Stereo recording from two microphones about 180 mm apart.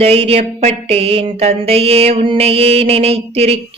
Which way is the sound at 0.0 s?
35° right (ahead or behind).